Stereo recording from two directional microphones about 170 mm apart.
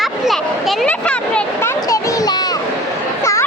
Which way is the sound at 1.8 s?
20° left (ahead or behind).